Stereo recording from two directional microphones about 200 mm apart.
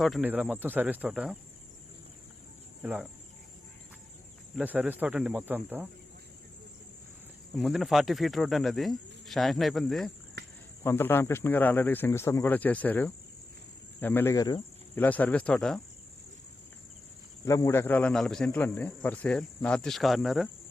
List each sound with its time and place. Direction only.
0.0 s speech: 5° right (ahead or behind)
2.8 s speech: 5° right (ahead or behind)
4.5 s speech: 5° right (ahead or behind)
7.5 s speech: centre (ahead or behind)
10.4 s a sound: 55° right (ahead or behind)
10.8 s speech: 10° left (ahead or behind)
15.0 s speech: 10° left (ahead or behind)
17.4 s speech: 15° left (ahead or behind)